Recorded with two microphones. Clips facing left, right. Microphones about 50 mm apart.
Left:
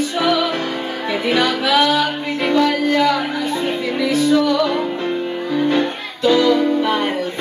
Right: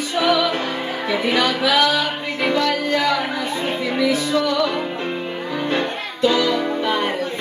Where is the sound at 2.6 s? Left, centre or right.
Centre.